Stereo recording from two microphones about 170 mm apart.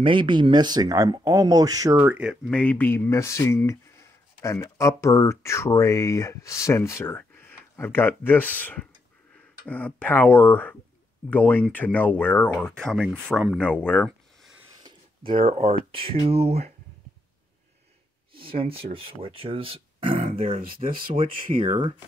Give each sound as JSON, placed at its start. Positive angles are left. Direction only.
{"t": 0.0, "sound": "speech", "side_deg": -30}
{"t": 2.5, "sound": "speech", "side_deg": 10}
{"t": 14.8, "sound": "a sound", "side_deg": -30}
{"t": 15.9, "sound": "speech", "side_deg": -35}
{"t": 18.3, "sound": "speech", "side_deg": -35}